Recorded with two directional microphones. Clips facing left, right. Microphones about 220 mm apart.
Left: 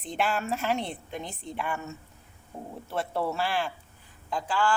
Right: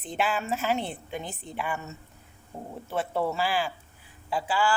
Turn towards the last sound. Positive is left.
turn(degrees=-5)  # may be behind; listen again after turning